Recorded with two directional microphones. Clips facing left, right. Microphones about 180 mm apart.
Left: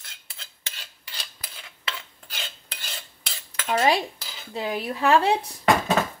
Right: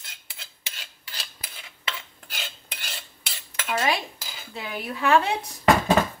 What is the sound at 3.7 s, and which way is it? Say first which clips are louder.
Dishes: left 4 dB; 35° left (ahead or behind).